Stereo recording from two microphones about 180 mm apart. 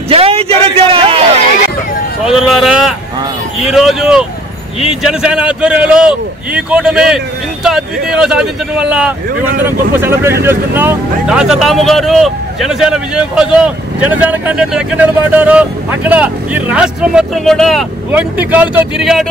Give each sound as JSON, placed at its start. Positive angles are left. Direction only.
{"t": 0.1, "sound": "a sound", "side_deg": -35}
{"t": 2.2, "sound": "speech", "side_deg": -5}
{"t": 18.1, "sound": "speech", "side_deg": -10}